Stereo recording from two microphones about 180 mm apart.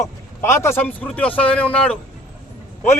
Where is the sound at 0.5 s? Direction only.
15° left (ahead or behind).